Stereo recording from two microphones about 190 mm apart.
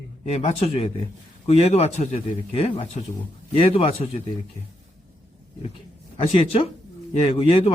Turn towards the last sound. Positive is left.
turn(degrees=30)  # may be behind; listen again after turning